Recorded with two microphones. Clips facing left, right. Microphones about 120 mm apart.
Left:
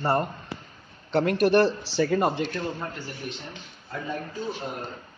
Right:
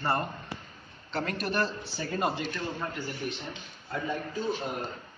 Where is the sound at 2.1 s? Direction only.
50° left (ahead or behind).